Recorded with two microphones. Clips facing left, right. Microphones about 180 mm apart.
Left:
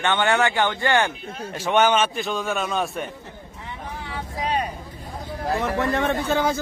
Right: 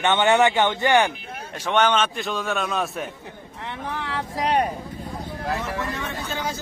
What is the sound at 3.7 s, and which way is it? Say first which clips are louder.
Vehicle: right 4 dB; 85° right.